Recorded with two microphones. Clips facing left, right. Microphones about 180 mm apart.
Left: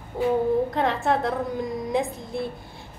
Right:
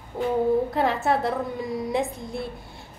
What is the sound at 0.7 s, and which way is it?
A woman's voice, 5° right (ahead or behind).